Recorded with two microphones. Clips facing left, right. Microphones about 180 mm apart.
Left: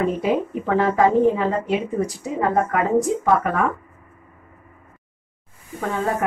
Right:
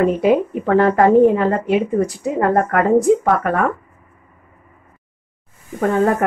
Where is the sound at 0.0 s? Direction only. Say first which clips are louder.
Right 6 dB; 60° right (ahead or behind).